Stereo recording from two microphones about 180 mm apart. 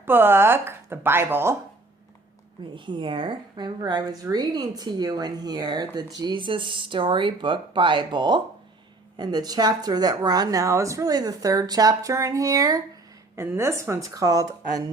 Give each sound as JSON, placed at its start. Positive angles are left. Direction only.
{"t": 0.0, "sound": "speech", "side_deg": -10}
{"t": 2.7, "sound": "speech", "side_deg": -25}